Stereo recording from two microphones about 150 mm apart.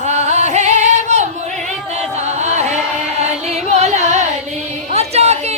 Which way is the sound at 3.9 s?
50° right (ahead or behind).